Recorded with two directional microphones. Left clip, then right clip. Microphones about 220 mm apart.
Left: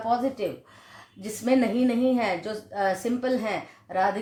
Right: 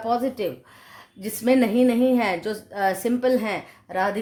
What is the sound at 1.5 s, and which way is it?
Speech, 40° right (ahead or behind).